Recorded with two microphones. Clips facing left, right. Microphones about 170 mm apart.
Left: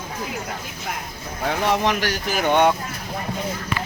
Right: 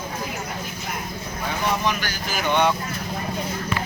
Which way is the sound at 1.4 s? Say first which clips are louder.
Left 4 dB; 80° left.